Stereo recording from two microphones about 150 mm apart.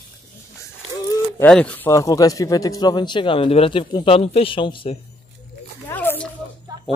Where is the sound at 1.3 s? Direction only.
5° left (ahead or behind); by 5.0 s 35° left (ahead or behind).